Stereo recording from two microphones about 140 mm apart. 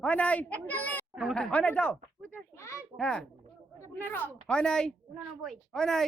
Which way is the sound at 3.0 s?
5° left (ahead or behind).